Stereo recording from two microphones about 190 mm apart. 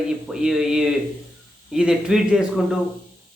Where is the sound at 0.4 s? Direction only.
5° right (ahead or behind).